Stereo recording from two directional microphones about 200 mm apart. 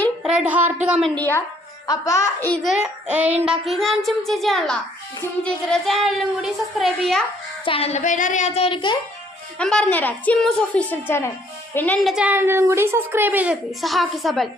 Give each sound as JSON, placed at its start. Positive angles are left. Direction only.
{"t": 0.2, "sound": "a sound", "side_deg": -5}
{"t": 0.9, "sound": "a woman's voice", "side_deg": -5}
{"t": 1.1, "sound": "a woman's voice", "side_deg": 10}
{"t": 2.6, "sound": "a woman's voice", "side_deg": -5}
{"t": 7.6, "sound": "a child's voice", "side_deg": 30}
{"t": 9.6, "sound": "a woman's voice", "side_deg": 5}
{"t": 12.1, "sound": "a woman's voice", "side_deg": -10}